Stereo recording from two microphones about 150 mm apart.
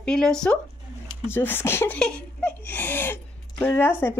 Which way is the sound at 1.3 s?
15° left (ahead or behind).